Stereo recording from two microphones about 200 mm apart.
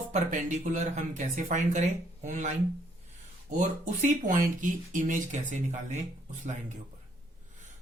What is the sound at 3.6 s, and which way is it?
Speech, 40° right (ahead or behind).